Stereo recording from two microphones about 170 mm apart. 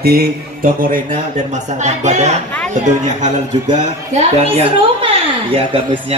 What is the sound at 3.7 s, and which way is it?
A woman's voice, 40° right (ahead or behind).